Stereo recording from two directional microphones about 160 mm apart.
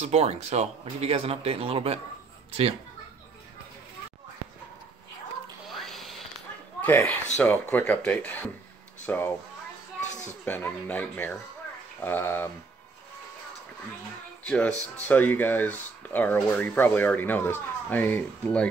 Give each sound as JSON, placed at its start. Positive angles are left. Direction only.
{"t": 0.0, "sound": "speech", "side_deg": -40}
{"t": 5.7, "sound": "a sound", "side_deg": 0}
{"t": 6.8, "sound": "speech", "side_deg": 10}
{"t": 10.4, "sound": "speech", "side_deg": 10}
{"t": 14.4, "sound": "speech", "side_deg": 5}